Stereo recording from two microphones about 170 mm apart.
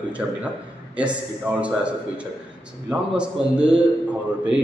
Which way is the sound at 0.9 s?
5° right (ahead or behind).